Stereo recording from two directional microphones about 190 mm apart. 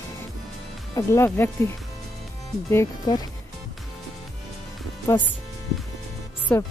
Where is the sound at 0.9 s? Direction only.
15° left (ahead or behind).